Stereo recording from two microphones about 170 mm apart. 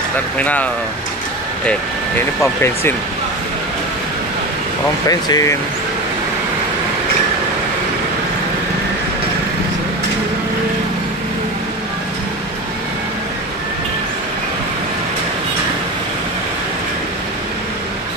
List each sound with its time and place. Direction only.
0.4 s speech: 10° left (ahead or behind)
2.4 s speech: 15° left (ahead or behind)
5.0 s speech: 20° left (ahead or behind)